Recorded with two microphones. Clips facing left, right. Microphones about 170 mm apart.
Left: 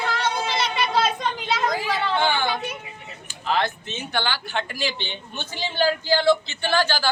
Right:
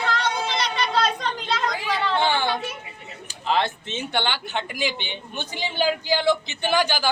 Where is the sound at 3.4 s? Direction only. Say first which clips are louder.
Right 1 dB; 25° right (ahead or behind).